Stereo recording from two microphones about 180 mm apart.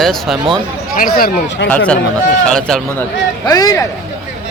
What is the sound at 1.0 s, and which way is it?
Speech, 55° left (ahead or behind).